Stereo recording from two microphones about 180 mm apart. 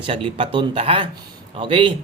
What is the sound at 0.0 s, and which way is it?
Speech, 30° right (ahead or behind).